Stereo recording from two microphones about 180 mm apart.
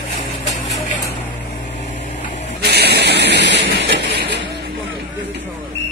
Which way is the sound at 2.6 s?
65° right (ahead or behind).